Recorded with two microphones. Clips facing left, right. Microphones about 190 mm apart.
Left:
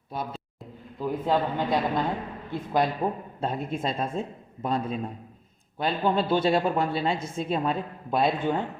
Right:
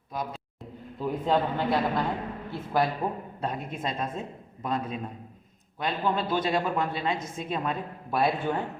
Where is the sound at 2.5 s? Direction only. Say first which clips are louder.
Left 2 dB; 20° left (ahead or behind).